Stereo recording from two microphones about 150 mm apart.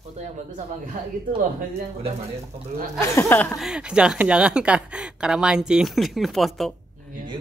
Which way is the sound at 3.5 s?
5° right (ahead or behind).